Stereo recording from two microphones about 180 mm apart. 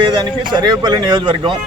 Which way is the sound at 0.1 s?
25° right (ahead or behind).